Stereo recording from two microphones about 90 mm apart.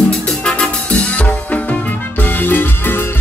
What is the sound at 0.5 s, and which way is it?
Music, 10° left (ahead or behind).